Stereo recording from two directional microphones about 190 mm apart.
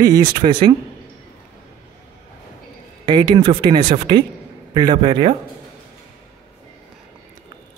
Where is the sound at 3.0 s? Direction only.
25° right (ahead or behind).